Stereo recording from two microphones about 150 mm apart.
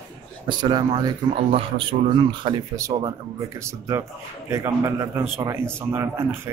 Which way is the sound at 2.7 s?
20° right (ahead or behind).